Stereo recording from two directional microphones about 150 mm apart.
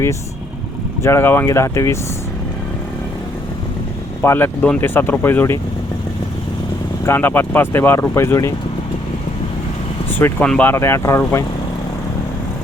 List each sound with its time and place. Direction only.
1.0 s speech: 15° left (ahead or behind)
4.2 s speech: 15° left (ahead or behind)
7.0 s speech: 15° left (ahead or behind)
10.1 s speech: 15° left (ahead or behind)